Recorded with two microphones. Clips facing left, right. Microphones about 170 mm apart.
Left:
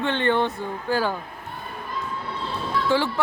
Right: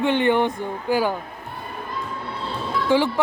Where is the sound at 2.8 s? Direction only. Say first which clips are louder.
Right 4 dB; 15° right (ahead or behind).